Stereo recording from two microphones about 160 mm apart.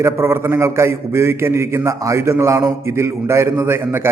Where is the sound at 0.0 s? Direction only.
15° right (ahead or behind).